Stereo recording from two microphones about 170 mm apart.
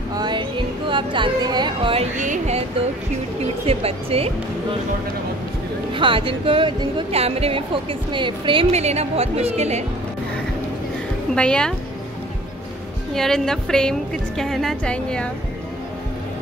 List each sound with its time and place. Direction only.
0.1 s music: 25° right (ahead or behind)
2.1 s speech: 45° right (ahead or behind)
3.6 s speech: 35° right (ahead or behind)
5.9 s speech: 30° right (ahead or behind)
11.3 s a woman's voice: 5° left (ahead or behind)
13.1 s a woman's voice: 5° left (ahead or behind)